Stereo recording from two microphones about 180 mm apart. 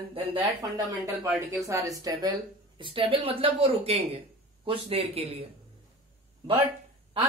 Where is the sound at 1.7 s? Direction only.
20° right (ahead or behind); by 5.4 s 35° right (ahead or behind).